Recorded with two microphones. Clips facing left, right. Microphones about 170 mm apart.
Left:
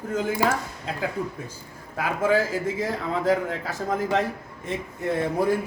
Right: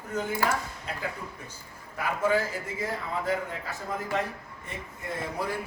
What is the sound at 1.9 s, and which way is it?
A man's voice, 90° left.